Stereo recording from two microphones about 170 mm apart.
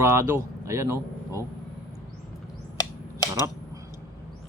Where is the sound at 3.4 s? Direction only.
20° right (ahead or behind).